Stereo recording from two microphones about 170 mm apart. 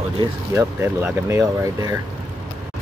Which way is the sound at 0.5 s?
15° right (ahead or behind).